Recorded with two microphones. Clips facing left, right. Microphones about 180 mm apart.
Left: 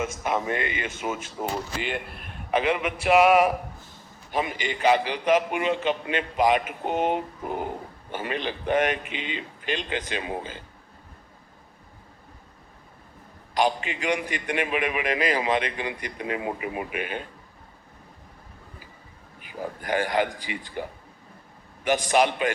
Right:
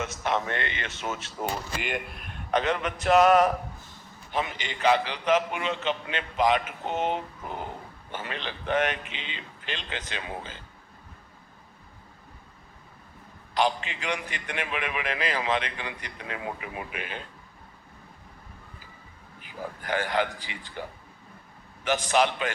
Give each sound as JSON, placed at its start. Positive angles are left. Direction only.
{"t": 0.2, "sound": "a man's voice", "side_deg": 10}
{"t": 1.8, "sound": "speech", "side_deg": -10}
{"t": 2.0, "sound": "a man's voice", "side_deg": 0}
{"t": 13.5, "sound": "a man's voice", "side_deg": 10}
{"t": 16.9, "sound": "speech", "side_deg": 55}
{"t": 19.8, "sound": "a man's voice", "side_deg": 10}
{"t": 21.8, "sound": "a man's voice", "side_deg": 15}